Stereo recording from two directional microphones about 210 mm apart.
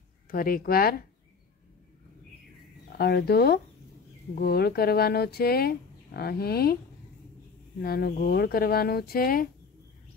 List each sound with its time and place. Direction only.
0.3 s speech: 45° left (ahead or behind)
2.9 s speech: 50° left (ahead or behind)
7.8 s speech: 50° left (ahead or behind)